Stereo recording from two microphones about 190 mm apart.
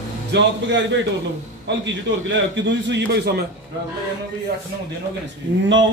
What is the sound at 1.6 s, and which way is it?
A man's voice, 70° right (ahead or behind).